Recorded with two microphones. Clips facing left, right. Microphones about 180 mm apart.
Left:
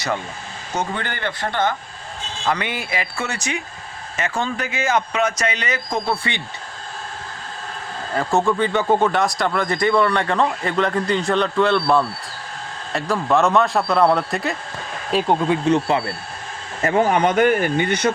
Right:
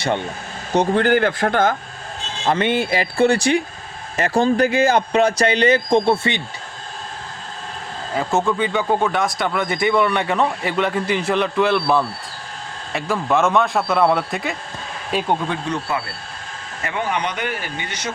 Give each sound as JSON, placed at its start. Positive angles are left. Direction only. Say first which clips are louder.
{"t": 0.0, "sound": "speech", "louder": "right 3 dB", "side_deg": -25}
{"t": 1.2, "sound": "speech", "louder": "right 5 dB", "side_deg": -50}
{"t": 2.4, "sound": "speech", "louder": "right 5 dB", "side_deg": -25}
{"t": 8.1, "sound": "speech", "louder": "left 1 dB", "side_deg": -5}
{"t": 15.6, "sound": "speech", "louder": "left 6 dB", "side_deg": 25}
{"t": 16.8, "sound": "speech", "louder": "left 7 dB", "side_deg": 40}